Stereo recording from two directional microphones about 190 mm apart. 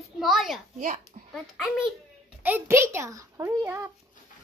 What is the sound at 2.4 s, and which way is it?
A child's voice, 10° right (ahead or behind).